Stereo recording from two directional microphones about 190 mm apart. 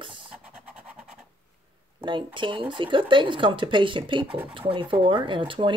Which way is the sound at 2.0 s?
25° right (ahead or behind).